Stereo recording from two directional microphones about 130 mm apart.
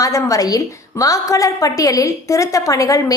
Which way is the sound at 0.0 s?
25° left (ahead or behind).